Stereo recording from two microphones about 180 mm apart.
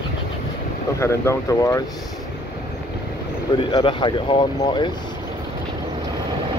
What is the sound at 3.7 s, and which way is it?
Speech, 25° left (ahead or behind).